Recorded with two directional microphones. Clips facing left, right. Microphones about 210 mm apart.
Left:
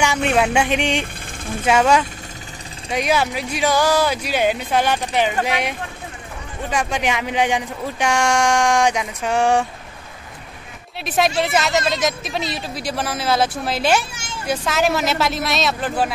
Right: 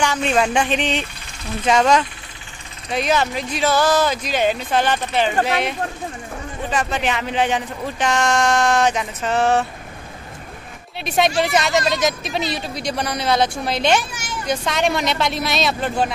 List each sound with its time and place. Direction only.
0.3 s speech: 10° left (ahead or behind)
11.0 s speech: centre (ahead or behind)
14.1 s a sound: 25° left (ahead or behind)
14.4 s speech: 5° left (ahead or behind)